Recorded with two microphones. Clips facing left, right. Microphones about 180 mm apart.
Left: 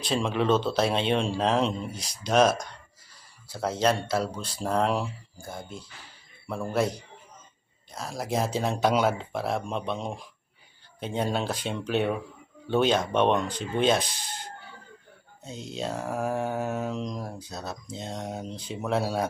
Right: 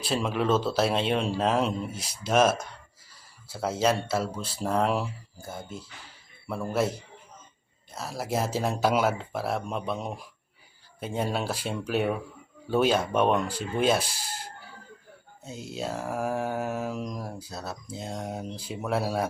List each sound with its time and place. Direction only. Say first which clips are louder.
0.0 s speech: left 1 dB; 5° right (ahead or behind)
3.5 s mantra: even; 5° right (ahead or behind)
4.1 s speech: left 1 dB; 5° right (ahead or behind)
7.9 s speech: left 1 dB; 5° right (ahead or behind)
12.6 s mantra: even; 5° right (ahead or behind)
15.4 s mantra: left 1 dB; 5° right (ahead or behind)
18.7 s speech: left 1 dB; 5° right (ahead or behind)